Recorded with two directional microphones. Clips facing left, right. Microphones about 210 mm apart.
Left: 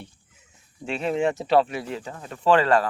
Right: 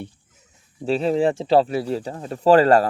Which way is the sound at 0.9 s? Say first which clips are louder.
Right 5 dB; 35° right (ahead or behind).